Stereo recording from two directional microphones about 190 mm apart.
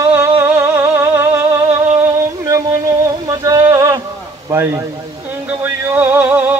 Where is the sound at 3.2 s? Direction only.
20° right (ahead or behind).